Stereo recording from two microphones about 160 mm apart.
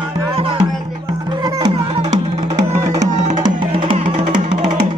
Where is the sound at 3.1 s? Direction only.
45° right (ahead or behind).